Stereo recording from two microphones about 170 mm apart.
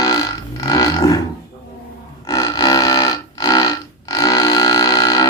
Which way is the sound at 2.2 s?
20° left (ahead or behind).